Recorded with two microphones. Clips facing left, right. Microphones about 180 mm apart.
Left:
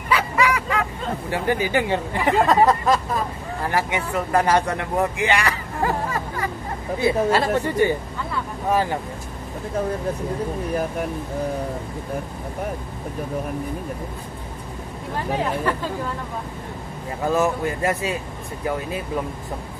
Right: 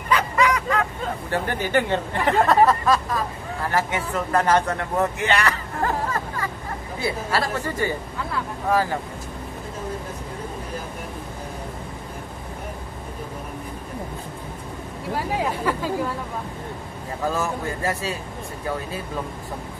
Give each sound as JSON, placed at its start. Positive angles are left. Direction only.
{"t": 0.1, "sound": "vehicle", "side_deg": 10}
{"t": 1.3, "sound": "speech", "side_deg": 10}
{"t": 15.1, "sound": "speech", "side_deg": -10}
{"t": 17.4, "sound": "speech", "side_deg": 15}